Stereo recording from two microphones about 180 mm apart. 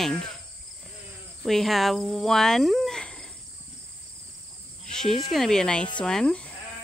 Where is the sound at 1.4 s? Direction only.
Centre (ahead or behind).